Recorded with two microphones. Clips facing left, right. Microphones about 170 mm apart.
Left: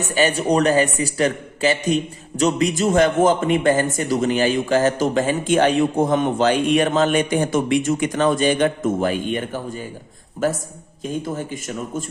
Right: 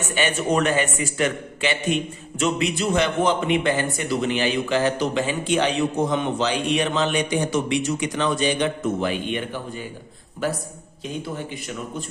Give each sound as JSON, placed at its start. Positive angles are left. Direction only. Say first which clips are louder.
{"t": 0.0, "sound": "a man's voice", "louder": "left 4 dB", "side_deg": 40}